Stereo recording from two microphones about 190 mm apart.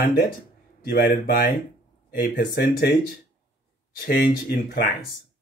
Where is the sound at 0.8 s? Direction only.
50° left (ahead or behind).